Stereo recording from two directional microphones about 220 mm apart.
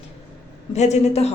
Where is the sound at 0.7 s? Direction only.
30° left (ahead or behind).